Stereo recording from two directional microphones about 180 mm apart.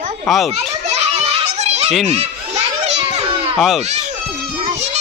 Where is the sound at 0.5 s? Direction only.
35° right (ahead or behind).